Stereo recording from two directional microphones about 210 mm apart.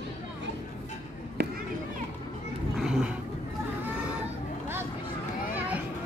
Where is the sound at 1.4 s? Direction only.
55° right (ahead or behind).